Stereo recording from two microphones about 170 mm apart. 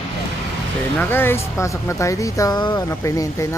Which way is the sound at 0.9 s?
10° left (ahead or behind).